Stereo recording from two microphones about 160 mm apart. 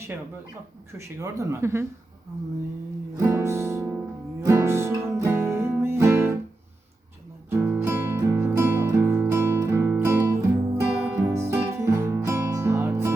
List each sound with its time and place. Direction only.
1.0 s speech: 20° right (ahead or behind)
3.2 s music: 20° right (ahead or behind)
7.5 s music: 15° right (ahead or behind)